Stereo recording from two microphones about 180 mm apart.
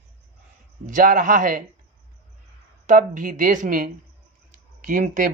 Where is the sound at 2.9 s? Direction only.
45° right (ahead or behind).